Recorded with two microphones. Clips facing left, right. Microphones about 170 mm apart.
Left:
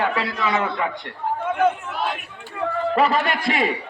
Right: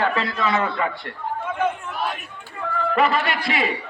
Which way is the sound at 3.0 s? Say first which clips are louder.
Even; 35° left (ahead or behind).